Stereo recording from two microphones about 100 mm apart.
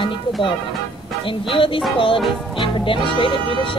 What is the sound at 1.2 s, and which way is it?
Speech, 60° left (ahead or behind).